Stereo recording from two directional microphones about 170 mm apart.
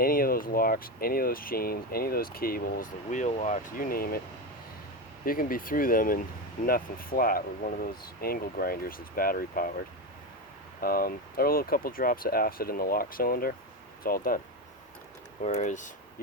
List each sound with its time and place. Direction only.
0.0 s speech: 60° left (ahead or behind)
5.2 s speech: 55° left (ahead or behind)
15.4 s speech: 45° left (ahead or behind)